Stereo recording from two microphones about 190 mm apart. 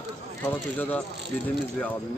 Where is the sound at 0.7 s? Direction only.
10° left (ahead or behind).